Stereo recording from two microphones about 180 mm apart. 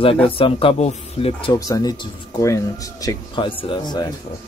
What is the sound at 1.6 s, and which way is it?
Speech, 20° left (ahead or behind).